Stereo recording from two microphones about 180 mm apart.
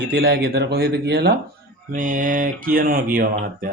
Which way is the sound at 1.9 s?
45° right (ahead or behind).